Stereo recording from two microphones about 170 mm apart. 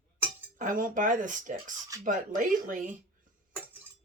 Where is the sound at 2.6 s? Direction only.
50° right (ahead or behind).